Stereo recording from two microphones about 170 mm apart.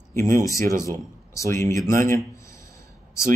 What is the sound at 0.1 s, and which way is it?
Speech, 15° left (ahead or behind).